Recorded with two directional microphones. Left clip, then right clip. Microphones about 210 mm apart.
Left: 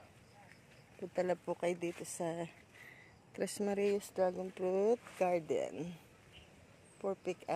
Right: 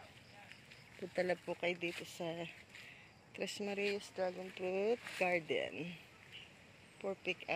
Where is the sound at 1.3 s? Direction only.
25° left (ahead or behind).